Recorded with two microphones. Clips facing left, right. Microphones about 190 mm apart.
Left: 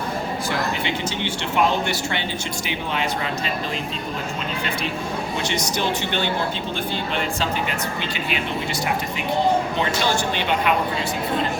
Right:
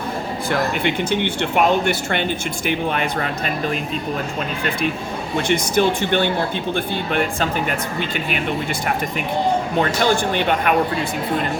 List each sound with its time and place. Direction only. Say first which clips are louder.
0.9 s speech: right 6 dB; 55° right (ahead or behind)
5.5 s speech: right 9 dB; 55° right (ahead or behind)
10.0 s speech: right 4 dB; 55° right (ahead or behind)